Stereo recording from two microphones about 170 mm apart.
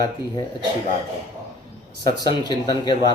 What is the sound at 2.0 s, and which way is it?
Speech, 25° left (ahead or behind).